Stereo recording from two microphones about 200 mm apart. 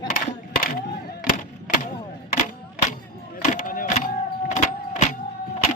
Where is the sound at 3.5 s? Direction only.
40° left (ahead or behind).